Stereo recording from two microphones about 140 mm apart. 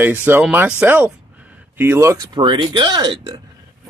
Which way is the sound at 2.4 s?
35° right (ahead or behind).